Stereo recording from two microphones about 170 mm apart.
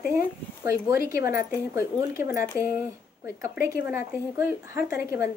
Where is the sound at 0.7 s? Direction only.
15° right (ahead or behind).